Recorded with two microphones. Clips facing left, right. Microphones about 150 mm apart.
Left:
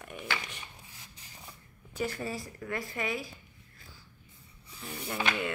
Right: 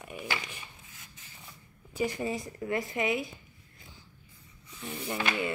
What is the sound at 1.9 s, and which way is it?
Speech, 15° right (ahead or behind).